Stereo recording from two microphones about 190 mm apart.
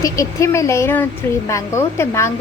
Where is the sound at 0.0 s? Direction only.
15° left (ahead or behind).